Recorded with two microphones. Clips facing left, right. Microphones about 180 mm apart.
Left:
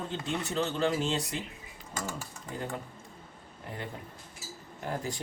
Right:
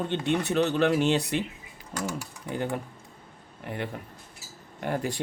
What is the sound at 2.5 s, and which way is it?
Speech, 70° right (ahead or behind).